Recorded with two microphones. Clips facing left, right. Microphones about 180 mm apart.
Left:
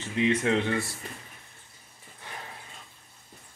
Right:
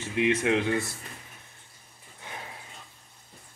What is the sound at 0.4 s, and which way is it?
Speech, 15° right (ahead or behind).